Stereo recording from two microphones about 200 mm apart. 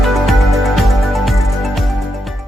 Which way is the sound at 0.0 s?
Centre (ahead or behind).